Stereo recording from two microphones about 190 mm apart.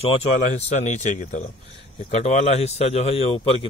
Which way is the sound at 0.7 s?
40° left (ahead or behind).